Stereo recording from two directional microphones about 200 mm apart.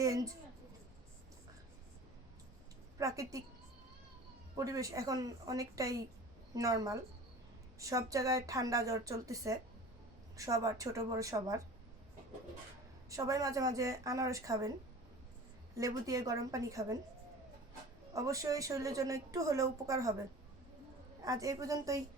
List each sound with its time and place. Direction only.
0.0 s a sound: 15° right (ahead or behind)
3.0 s speech: 15° right (ahead or behind)
4.5 s speech: 15° right (ahead or behind)
13.1 s speech: 15° right (ahead or behind)
15.8 s speech: 15° right (ahead or behind)
18.1 s speech: 15° right (ahead or behind)
21.2 s speech: 15° right (ahead or behind)